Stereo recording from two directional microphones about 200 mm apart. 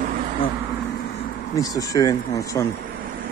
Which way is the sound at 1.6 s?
15° left (ahead or behind).